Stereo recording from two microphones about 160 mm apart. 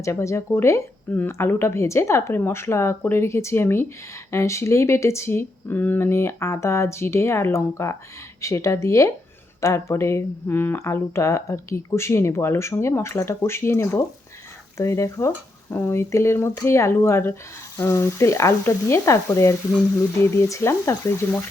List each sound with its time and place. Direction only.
0.0 s speech: 15° left (ahead or behind)